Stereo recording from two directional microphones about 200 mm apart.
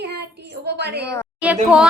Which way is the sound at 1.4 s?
5° right (ahead or behind).